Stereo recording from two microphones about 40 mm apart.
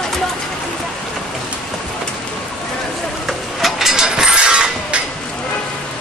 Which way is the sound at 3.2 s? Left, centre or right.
Centre.